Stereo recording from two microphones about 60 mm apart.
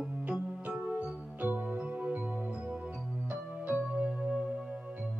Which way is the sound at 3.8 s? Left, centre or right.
Centre.